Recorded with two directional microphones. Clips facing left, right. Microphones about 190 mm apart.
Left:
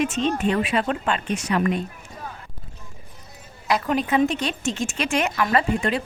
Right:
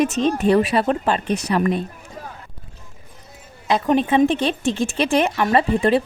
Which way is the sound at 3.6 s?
25° right (ahead or behind).